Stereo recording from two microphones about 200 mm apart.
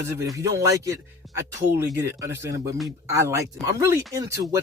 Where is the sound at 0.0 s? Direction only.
15° right (ahead or behind).